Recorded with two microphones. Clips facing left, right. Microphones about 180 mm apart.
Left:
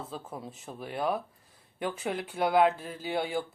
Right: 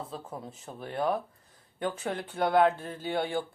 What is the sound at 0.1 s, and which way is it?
Speech, 5° left (ahead or behind).